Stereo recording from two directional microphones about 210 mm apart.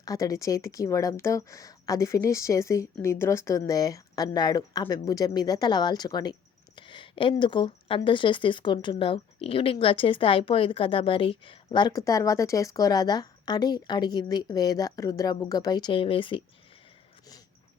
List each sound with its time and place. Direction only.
0.0 s speech: 15° left (ahead or behind)